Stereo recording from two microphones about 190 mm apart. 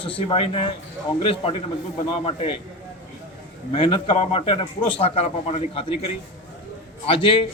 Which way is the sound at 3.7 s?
25° left (ahead or behind).